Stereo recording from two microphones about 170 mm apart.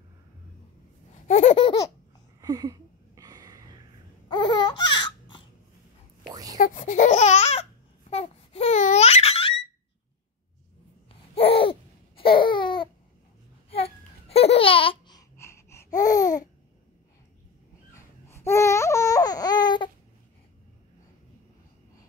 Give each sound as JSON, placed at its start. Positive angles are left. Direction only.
{"t": 1.2, "sound": "laughter", "side_deg": 45}
{"t": 2.4, "sound": "a sound", "side_deg": -20}
{"t": 4.3, "sound": "baby cry", "side_deg": 25}
{"t": 6.6, "sound": "baby cry", "side_deg": 50}
{"t": 8.1, "sound": "babbling", "side_deg": 35}
{"t": 11.3, "sound": "a sound", "side_deg": 35}
{"t": 13.7, "sound": "babbling", "side_deg": 35}
{"t": 17.9, "sound": "babbling", "side_deg": 15}